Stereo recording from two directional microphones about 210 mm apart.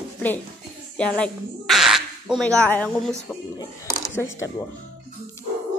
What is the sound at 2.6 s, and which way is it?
Speech, 5° left (ahead or behind).